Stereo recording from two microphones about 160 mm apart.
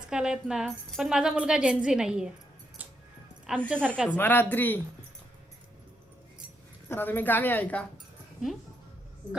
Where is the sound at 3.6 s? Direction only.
10° left (ahead or behind).